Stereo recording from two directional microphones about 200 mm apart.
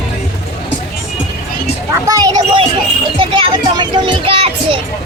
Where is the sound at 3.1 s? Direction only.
25° right (ahead or behind).